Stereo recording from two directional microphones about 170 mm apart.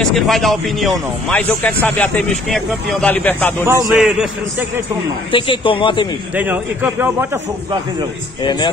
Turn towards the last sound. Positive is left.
turn(degrees=-10)  # may be behind; listen again after turning